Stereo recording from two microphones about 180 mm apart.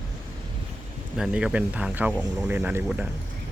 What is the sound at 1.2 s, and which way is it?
Speech, 5° right (ahead or behind).